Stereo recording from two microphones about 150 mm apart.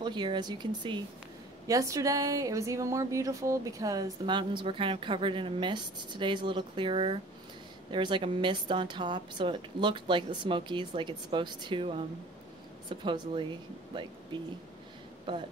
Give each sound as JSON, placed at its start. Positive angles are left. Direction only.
{"t": 0.0, "sound": "a woman's voice", "side_deg": -30}
{"t": 13.0, "sound": "a woman's voice", "side_deg": -30}